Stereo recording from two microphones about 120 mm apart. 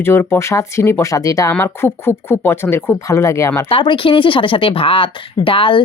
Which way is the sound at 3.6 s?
45° left (ahead or behind).